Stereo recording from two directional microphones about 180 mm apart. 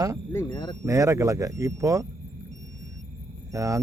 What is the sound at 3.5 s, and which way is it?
Speech, 20° right (ahead or behind).